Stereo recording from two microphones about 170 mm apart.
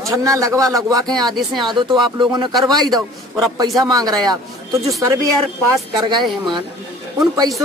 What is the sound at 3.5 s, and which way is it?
Speech, 20° right (ahead or behind).